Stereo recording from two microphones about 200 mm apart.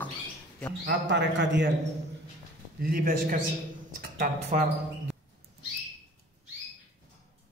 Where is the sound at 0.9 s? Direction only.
60° right (ahead or behind).